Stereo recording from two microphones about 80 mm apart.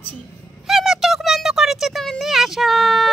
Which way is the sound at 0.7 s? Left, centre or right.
Centre.